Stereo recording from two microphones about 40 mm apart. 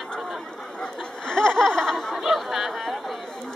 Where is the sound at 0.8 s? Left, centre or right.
Centre.